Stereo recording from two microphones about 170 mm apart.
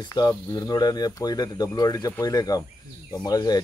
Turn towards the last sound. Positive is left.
turn(degrees=20)  # may be behind; listen again after turning